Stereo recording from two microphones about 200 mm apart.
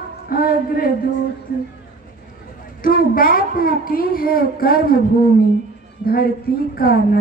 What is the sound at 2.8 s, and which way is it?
A woman's voice, 45° left (ahead or behind).